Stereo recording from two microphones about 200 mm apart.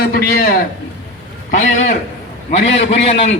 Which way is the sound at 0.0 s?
50° left (ahead or behind).